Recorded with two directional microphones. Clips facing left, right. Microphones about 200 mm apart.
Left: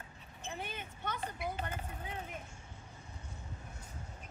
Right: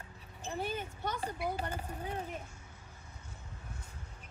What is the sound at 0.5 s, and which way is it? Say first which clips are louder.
Speech: right 6 dB; 35° right (ahead or behind).